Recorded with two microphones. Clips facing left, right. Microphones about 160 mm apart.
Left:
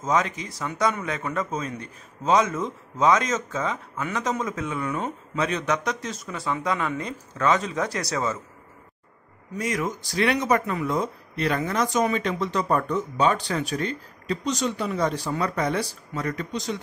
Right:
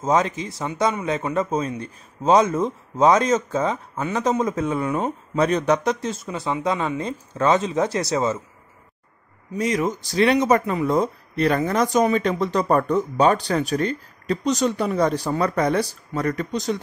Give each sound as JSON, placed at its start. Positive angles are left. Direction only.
{"t": 0.0, "sound": "a man's voice", "side_deg": -30}
{"t": 9.6, "sound": "speech", "side_deg": -25}